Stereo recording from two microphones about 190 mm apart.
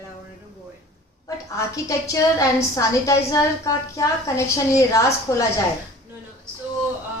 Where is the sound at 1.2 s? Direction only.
15° left (ahead or behind).